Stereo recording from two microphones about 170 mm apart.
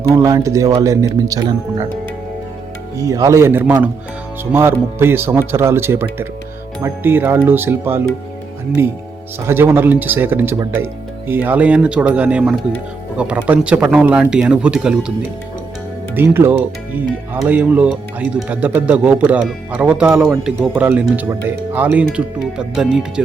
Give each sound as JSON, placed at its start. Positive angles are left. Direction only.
{"t": 0.1, "sound": "speech", "side_deg": -20}
{"t": 3.0, "sound": "speech", "side_deg": -20}
{"t": 9.5, "sound": "speech", "side_deg": -15}
{"t": 16.1, "sound": "speech", "side_deg": -15}